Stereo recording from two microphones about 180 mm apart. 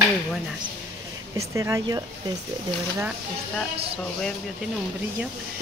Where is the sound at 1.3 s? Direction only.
15° right (ahead or behind).